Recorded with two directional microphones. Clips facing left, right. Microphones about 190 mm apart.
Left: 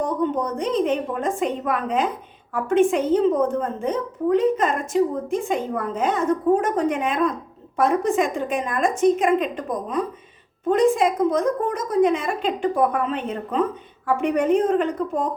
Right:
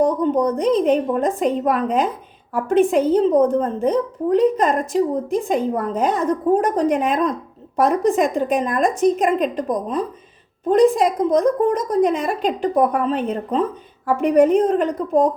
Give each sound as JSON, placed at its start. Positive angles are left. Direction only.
{"t": 0.0, "sound": "a woman's voice", "side_deg": -40}
{"t": 10.7, "sound": "a woman's voice", "side_deg": -35}